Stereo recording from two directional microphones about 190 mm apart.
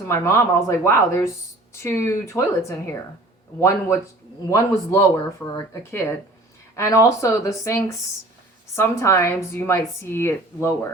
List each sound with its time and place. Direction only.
0.0 s speech: 15° left (ahead or behind)